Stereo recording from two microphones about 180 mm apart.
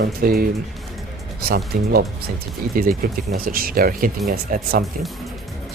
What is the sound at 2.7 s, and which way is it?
Speech, 55° right (ahead or behind).